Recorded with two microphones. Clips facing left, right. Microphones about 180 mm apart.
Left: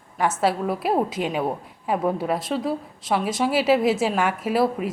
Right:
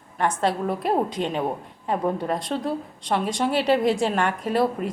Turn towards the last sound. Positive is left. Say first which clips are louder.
# left 1 dB
turn(degrees=5)  # may be behind; listen again after turning